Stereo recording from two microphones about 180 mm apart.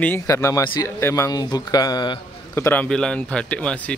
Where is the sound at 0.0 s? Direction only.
15° left (ahead or behind).